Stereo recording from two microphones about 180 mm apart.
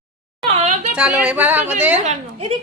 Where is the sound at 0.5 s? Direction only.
40° right (ahead or behind).